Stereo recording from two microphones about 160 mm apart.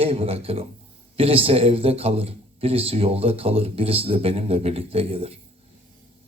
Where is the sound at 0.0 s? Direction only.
35° right (ahead or behind).